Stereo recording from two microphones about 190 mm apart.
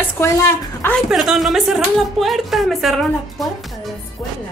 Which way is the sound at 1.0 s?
Centre (ahead or behind).